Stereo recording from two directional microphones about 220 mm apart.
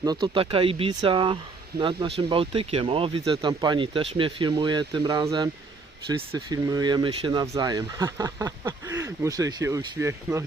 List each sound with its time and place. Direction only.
0.0 s speech: 20° right (ahead or behind)